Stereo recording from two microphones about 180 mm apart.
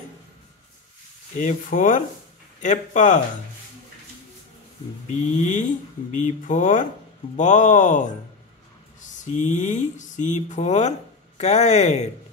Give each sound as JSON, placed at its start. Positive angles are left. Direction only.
{"t": 1.4, "sound": "speech", "side_deg": 45}
{"t": 5.0, "sound": "speech", "side_deg": 45}